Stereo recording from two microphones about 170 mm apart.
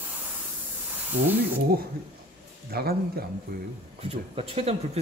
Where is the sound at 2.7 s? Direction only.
65° right (ahead or behind).